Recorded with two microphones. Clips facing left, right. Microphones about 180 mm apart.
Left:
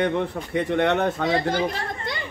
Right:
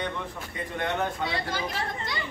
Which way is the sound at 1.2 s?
45° left (ahead or behind).